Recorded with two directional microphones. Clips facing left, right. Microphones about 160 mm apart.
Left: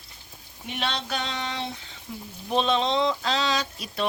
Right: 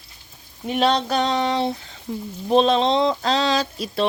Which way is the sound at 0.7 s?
40° right (ahead or behind).